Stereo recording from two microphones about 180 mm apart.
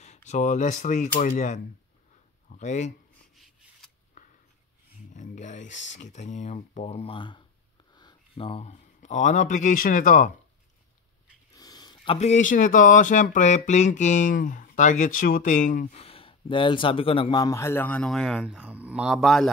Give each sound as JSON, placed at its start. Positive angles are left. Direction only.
{"t": 0.0, "sound": "speech", "side_deg": 40}
{"t": 5.1, "sound": "speech", "side_deg": 45}
{"t": 11.5, "sound": "a sound", "side_deg": 20}
{"t": 12.2, "sound": "speech", "side_deg": 40}
{"t": 16.0, "sound": "speech", "side_deg": 30}